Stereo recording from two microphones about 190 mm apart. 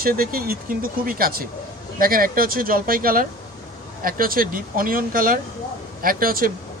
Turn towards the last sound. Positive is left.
turn(degrees=-50)  # may be behind; listen again after turning